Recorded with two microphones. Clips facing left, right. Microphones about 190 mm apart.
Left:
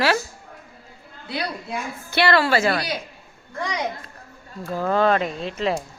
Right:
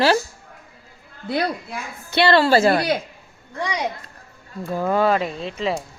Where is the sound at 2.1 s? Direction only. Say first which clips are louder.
Right 3 dB; 25° right (ahead or behind).